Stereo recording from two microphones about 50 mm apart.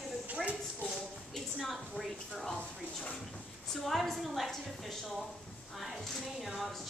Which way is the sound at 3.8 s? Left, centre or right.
Centre.